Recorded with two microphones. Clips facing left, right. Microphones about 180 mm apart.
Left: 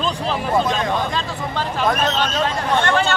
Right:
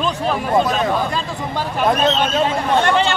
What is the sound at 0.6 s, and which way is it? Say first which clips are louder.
Speech: right 2 dB; 5° right (ahead or behind).